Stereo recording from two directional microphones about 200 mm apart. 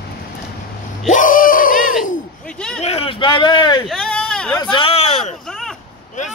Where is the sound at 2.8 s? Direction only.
30° left (ahead or behind).